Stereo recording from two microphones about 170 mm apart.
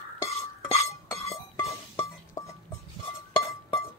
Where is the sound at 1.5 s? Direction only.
20° left (ahead or behind).